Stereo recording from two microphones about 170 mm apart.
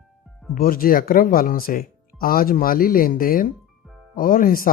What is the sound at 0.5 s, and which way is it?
Speech, 60° left (ahead or behind).